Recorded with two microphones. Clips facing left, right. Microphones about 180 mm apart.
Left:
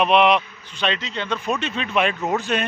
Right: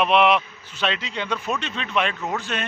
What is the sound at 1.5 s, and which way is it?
Speech, 5° left (ahead or behind).